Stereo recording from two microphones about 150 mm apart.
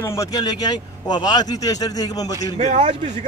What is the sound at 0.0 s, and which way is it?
Speech, 20° left (ahead or behind).